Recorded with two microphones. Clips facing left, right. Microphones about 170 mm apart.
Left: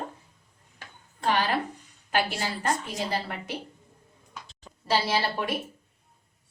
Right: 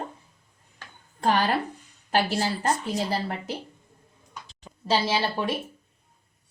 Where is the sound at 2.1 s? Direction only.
35° right (ahead or behind).